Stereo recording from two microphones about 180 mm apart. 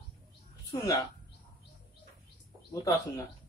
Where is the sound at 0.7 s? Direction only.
20° left (ahead or behind).